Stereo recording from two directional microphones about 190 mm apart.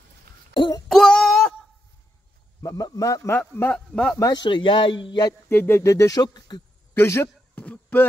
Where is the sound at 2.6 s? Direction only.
15° left (ahead or behind).